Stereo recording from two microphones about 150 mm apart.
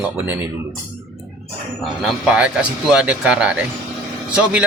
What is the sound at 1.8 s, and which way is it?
Speech, centre (ahead or behind).